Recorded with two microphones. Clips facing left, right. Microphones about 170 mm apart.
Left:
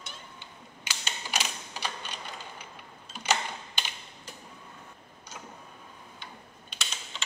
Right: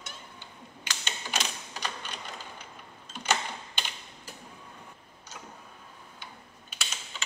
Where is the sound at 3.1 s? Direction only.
10° left (ahead or behind).